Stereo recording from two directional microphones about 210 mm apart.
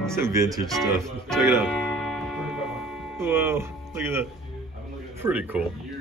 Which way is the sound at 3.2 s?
10° right (ahead or behind).